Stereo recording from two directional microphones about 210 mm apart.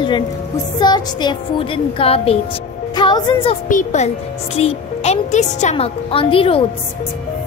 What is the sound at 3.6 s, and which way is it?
A woman's voice, 35° left (ahead or behind).